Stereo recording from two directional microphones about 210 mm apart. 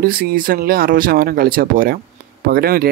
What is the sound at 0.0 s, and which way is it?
Speech, 45° right (ahead or behind).